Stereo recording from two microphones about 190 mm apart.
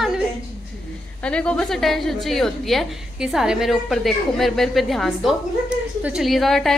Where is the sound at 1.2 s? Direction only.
5° left (ahead or behind).